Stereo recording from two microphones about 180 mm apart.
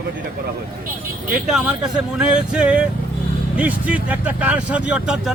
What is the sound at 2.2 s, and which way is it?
Music, 5° right (ahead or behind).